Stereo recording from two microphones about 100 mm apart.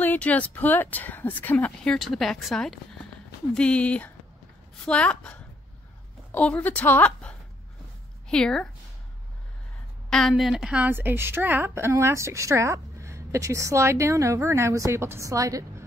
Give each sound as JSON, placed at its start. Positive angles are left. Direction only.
{"t": 0.0, "sound": "speech", "side_deg": 15}
{"t": 2.0, "sound": "a woman's voice", "side_deg": 0}
{"t": 10.0, "sound": "a woman's voice", "side_deg": 5}